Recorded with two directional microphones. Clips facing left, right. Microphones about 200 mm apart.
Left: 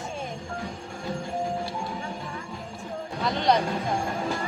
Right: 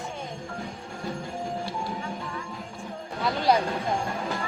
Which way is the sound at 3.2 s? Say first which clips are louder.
Even; 5° right (ahead or behind).